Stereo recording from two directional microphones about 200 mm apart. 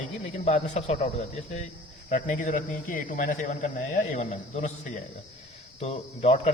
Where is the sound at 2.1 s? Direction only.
40° left (ahead or behind).